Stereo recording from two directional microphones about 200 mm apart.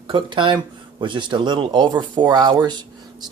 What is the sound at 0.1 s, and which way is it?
Speech, 25° right (ahead or behind).